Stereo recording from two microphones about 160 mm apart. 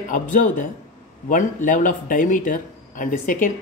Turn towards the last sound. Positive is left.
turn(degrees=55)  # may be behind; listen again after turning